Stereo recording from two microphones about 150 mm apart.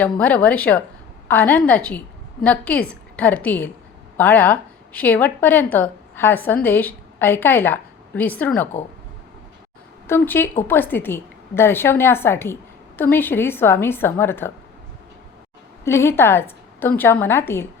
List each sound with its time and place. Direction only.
0.0 s a woman's voice: 10° left (ahead or behind)
10.1 s a woman's voice: 15° left (ahead or behind)
15.8 s a woman's voice: 20° left (ahead or behind)